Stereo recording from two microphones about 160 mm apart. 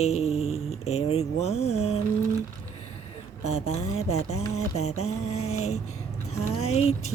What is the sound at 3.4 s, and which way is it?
Mantra, 40° left (ahead or behind).